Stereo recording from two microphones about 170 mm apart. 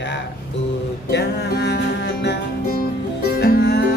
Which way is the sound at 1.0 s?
80° left.